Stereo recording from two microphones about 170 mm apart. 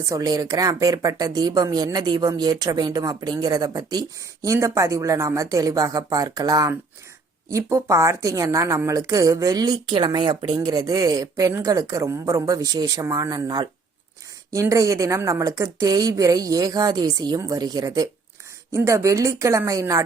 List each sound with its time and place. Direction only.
0.0 s a woman's voice: 20° right (ahead or behind)